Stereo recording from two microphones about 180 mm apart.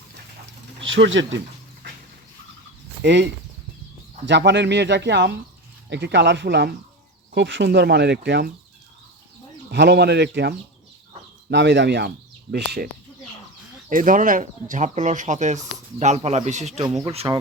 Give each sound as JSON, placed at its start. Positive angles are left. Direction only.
{"t": 0.8, "sound": "speech", "side_deg": -90}
{"t": 3.0, "sound": "speech", "side_deg": -80}
{"t": 4.3, "sound": "speech", "side_deg": -75}
{"t": 7.3, "sound": "speech", "side_deg": -85}
{"t": 9.7, "sound": "speech", "side_deg": -70}
{"t": 11.5, "sound": "speech", "side_deg": -80}
{"t": 13.9, "sound": "speech", "side_deg": -50}